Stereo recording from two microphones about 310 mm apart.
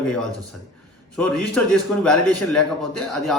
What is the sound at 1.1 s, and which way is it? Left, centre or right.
A man's voice, centre.